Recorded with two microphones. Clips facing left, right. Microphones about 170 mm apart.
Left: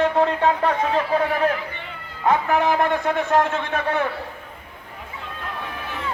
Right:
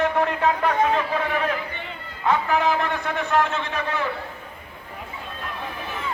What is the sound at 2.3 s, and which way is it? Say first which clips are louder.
A man's voice: left 2 dB; 50° left (ahead or behind).